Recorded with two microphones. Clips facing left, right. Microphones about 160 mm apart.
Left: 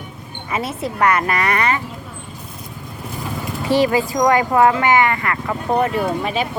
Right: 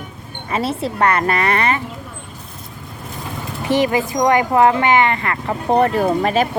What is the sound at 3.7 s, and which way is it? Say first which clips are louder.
Speech: left 1 dB; 20° right (ahead or behind).